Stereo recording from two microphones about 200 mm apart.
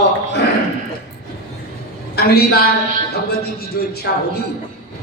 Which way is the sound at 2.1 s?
50° left (ahead or behind).